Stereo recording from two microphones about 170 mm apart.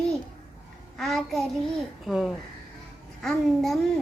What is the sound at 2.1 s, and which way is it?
A child's voice, centre (ahead or behind).